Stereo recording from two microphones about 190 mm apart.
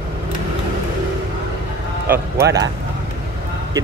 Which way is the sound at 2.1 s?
15° right (ahead or behind).